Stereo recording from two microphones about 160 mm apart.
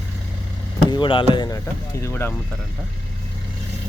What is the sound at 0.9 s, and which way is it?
Speech, 30° left (ahead or behind).